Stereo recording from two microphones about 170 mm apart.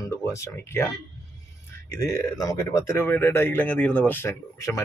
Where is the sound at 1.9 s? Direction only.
15° left (ahead or behind).